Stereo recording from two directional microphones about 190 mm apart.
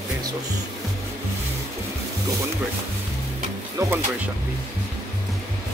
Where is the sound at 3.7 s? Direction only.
15° right (ahead or behind).